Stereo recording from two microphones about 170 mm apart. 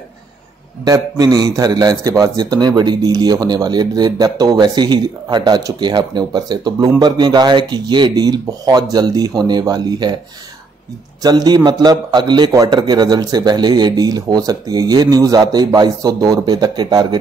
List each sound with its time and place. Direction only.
0.8 s a man's voice: 20° right (ahead or behind)
11.2 s a man's voice: 25° right (ahead or behind)